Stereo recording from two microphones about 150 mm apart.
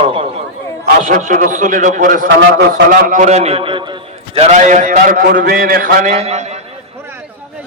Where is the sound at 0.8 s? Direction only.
60° right (ahead or behind); by 4.4 s 30° right (ahead or behind).